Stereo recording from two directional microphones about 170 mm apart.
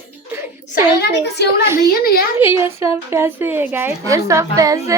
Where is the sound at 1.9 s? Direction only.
60° left (ahead or behind).